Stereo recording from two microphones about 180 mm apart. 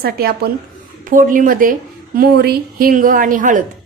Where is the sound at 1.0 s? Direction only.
50° right (ahead or behind).